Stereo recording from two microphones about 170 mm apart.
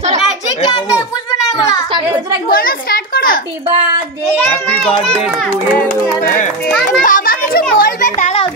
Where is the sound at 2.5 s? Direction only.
60° left (ahead or behind).